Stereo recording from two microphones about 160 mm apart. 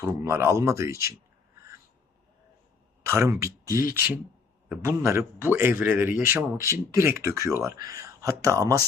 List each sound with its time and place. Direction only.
0.0 s a man's voice: 15° right (ahead or behind)
3.0 s a man's voice: 20° right (ahead or behind)